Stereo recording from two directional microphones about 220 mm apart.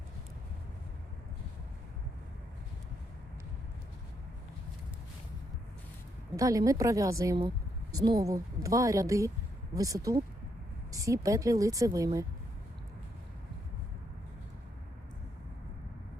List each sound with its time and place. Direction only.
6.3 s speech: 15° right (ahead or behind)